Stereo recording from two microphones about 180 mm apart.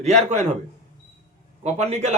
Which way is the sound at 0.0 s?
40° right (ahead or behind).